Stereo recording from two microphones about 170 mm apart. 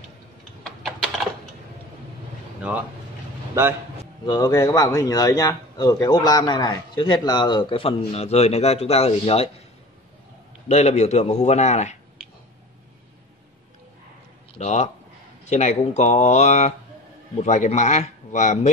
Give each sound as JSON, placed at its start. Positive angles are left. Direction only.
{"t": 0.7, "sound": "typing", "side_deg": 0}
{"t": 4.3, "sound": "a man's voice", "side_deg": 20}
{"t": 10.7, "sound": "speech", "side_deg": 40}
{"t": 14.5, "sound": "speech", "side_deg": 40}